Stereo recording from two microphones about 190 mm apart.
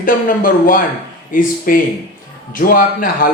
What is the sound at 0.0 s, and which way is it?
A man's voice, 45° left (ahead or behind).